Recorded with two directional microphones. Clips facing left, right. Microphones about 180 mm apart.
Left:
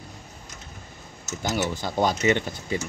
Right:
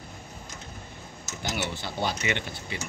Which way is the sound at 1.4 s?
45° left (ahead or behind).